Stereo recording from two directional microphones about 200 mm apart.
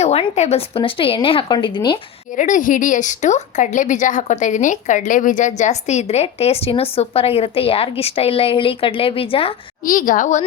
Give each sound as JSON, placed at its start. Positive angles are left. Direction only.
{"t": 0.0, "sound": "a woman's voice", "side_deg": 30}
{"t": 2.4, "sound": "a woman's voice", "side_deg": 40}
{"t": 9.8, "sound": "a woman's voice", "side_deg": 45}